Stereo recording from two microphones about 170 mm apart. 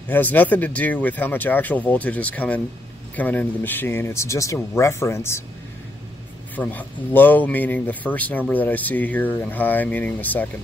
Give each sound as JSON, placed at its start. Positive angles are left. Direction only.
{"t": 0.1, "sound": "speech", "side_deg": 10}
{"t": 6.5, "sound": "speech", "side_deg": 10}